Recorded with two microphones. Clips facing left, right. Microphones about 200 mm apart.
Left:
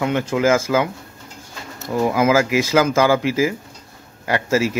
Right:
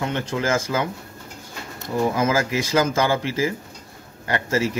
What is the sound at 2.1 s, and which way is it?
A man's voice, 90° left.